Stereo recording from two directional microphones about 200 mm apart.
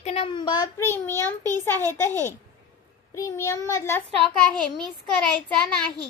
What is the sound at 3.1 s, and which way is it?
Speech, 15° left (ahead or behind).